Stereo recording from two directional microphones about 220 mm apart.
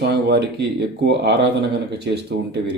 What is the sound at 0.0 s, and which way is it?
Speech, 50° right (ahead or behind).